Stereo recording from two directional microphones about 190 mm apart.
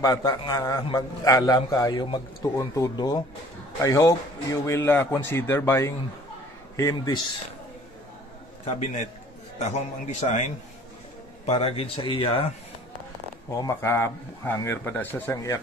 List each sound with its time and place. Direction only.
0.0 s a man's voice: 20° left (ahead or behind)
8.6 s a man's voice: 40° left (ahead or behind)
11.4 s a man's voice: 30° left (ahead or behind)
13.6 s speech: 15° left (ahead or behind)